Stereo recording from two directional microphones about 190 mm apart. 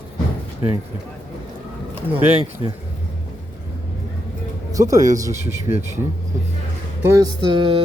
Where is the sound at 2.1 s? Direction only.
30° right (ahead or behind).